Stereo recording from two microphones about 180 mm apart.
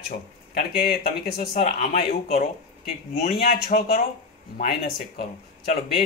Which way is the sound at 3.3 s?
55° left (ahead or behind).